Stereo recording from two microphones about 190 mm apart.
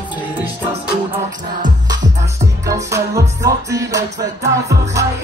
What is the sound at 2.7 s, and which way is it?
Music, 15° right (ahead or behind).